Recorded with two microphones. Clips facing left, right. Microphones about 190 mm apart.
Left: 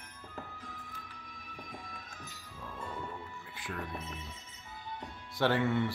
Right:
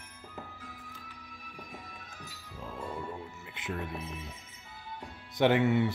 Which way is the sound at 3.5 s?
20° right (ahead or behind).